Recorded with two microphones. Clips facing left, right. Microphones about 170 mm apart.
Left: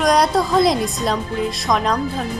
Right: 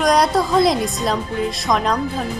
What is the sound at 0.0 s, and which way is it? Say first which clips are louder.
A woman's voice: even; centre (ahead or behind).